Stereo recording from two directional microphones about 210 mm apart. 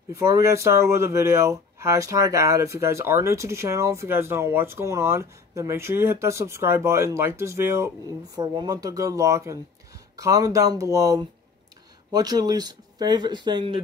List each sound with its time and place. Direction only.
0.1 s speech: 15° right (ahead or behind)